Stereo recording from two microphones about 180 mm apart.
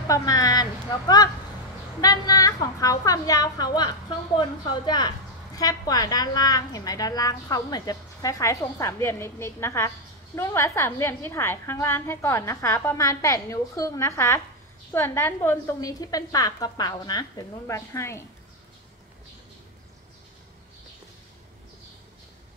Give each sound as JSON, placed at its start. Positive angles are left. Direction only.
{"t": 0.1, "sound": "a woman's voice", "side_deg": 20}